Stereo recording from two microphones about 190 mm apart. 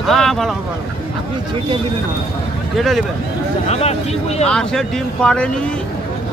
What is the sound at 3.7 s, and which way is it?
Speech, 35° left (ahead or behind).